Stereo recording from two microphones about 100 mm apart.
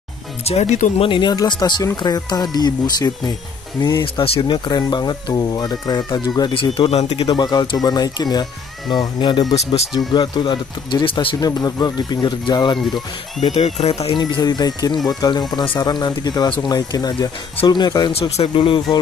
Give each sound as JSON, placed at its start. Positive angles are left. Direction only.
{"t": 0.5, "sound": "speech", "side_deg": 85}
{"t": 1.3, "sound": "speech", "side_deg": 40}
{"t": 4.0, "sound": "speech", "side_deg": 65}
{"t": 6.5, "sound": "speech", "side_deg": 55}
{"t": 6.9, "sound": "speech", "side_deg": 85}
{"t": 7.3, "sound": "speech", "side_deg": 45}
{"t": 11.3, "sound": "speech", "side_deg": 40}
{"t": 13.4, "sound": "speech", "side_deg": 85}
{"t": 14.1, "sound": "speech", "side_deg": 45}
{"t": 18.3, "sound": "speech", "side_deg": 70}